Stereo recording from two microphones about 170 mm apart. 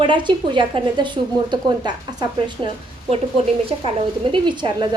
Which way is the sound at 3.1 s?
35° right (ahead or behind).